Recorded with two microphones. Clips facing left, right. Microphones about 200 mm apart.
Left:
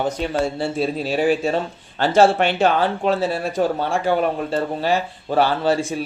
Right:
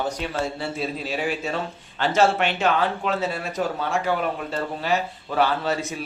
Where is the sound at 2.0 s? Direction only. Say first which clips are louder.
Left 5 dB; 30° left (ahead or behind).